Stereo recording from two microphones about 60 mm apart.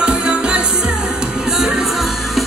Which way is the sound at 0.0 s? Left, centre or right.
Right.